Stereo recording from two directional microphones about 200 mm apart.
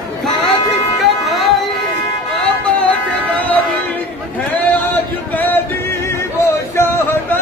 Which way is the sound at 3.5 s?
10° left (ahead or behind).